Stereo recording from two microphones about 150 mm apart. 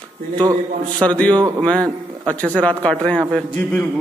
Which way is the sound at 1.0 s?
10° left (ahead or behind).